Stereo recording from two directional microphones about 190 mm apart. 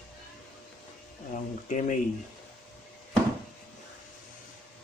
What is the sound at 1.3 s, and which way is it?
Speech, 40° left (ahead or behind).